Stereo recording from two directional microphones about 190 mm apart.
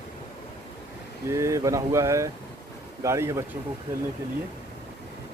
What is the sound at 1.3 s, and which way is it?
Speech, 15° right (ahead or behind).